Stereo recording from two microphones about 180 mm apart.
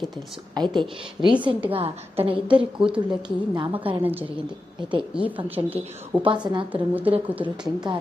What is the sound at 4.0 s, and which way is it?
Speech, 10° right (ahead or behind).